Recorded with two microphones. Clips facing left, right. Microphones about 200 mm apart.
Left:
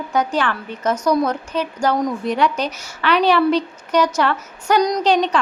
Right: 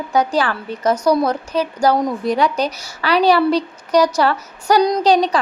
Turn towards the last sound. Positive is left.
turn(degrees=-35)  # may be behind; listen again after turning